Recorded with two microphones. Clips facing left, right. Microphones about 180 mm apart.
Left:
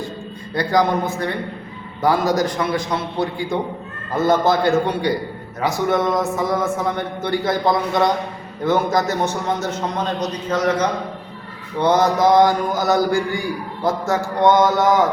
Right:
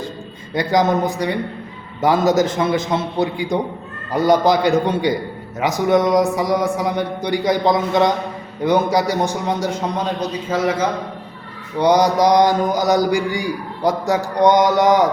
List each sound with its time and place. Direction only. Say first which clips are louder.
0.5 s a man's voice: right 1 dB; 20° right (ahead or behind)